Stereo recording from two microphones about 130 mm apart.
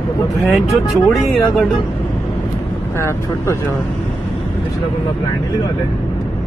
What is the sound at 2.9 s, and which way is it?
Speech, 20° left (ahead or behind).